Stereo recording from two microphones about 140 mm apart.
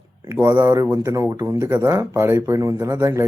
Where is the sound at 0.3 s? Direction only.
15° right (ahead or behind).